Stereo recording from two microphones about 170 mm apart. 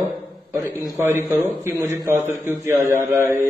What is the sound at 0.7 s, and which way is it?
Speech, 20° left (ahead or behind).